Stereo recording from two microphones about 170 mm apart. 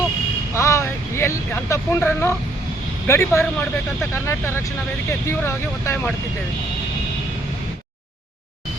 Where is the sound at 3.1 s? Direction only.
15° left (ahead or behind).